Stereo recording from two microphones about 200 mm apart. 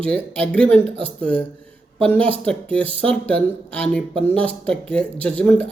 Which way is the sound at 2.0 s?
5° left (ahead or behind).